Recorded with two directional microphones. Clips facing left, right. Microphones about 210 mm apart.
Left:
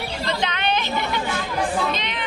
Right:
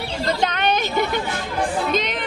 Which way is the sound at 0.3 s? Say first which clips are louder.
Right 3 dB; 45° right (ahead or behind).